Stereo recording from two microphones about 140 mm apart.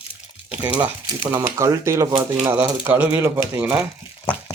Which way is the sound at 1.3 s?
20° right (ahead or behind).